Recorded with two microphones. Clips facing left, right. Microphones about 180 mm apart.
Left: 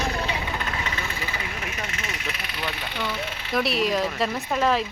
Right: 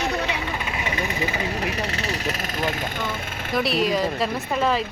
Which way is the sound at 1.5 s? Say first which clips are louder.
Right 7 dB; 35° right (ahead or behind).